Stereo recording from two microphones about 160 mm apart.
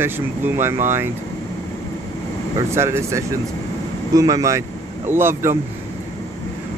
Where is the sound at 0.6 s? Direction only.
15° right (ahead or behind).